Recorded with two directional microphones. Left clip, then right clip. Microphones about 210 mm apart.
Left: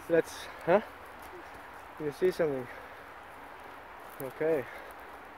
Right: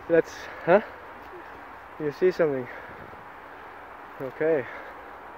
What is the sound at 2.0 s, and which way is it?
Speech, 20° right (ahead or behind).